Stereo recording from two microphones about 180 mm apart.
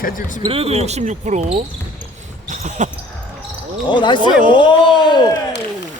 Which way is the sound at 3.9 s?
25° left (ahead or behind).